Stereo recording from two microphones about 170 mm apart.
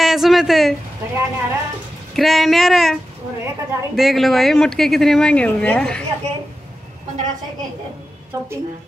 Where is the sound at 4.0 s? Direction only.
Centre (ahead or behind).